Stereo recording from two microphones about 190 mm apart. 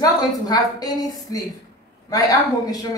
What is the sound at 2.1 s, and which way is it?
Speech, 20° left (ahead or behind).